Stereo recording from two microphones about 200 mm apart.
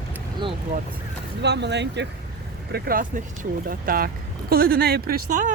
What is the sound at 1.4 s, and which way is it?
Speech, 60° right (ahead or behind).